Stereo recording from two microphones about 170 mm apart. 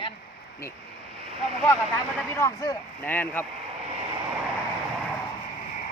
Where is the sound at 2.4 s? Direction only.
15° left (ahead or behind).